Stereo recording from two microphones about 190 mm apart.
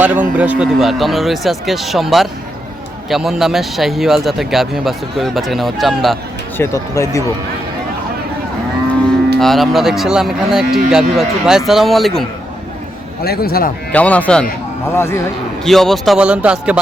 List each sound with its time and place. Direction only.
0.0 s speech: 10° right (ahead or behind)
6.6 s speech: 15° left (ahead or behind)
9.4 s speech: centre (ahead or behind)
13.2 s a man's voice: 55° left (ahead or behind)
13.9 s speech: 5° left (ahead or behind)
15.6 s speech: centre (ahead or behind)